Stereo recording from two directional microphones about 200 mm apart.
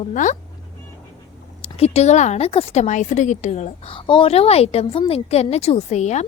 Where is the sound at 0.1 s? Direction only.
40° left (ahead or behind).